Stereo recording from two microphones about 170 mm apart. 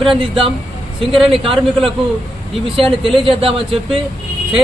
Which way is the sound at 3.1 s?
30° right (ahead or behind).